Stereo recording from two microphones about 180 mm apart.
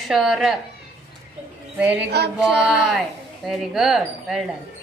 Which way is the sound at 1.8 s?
10° right (ahead or behind).